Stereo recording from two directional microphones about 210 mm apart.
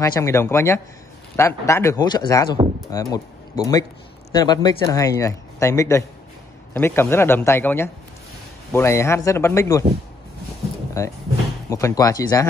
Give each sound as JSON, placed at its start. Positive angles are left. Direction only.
{"t": 0.0, "sound": "a man's voice", "side_deg": 15}
{"t": 11.0, "sound": "a man's voice", "side_deg": 15}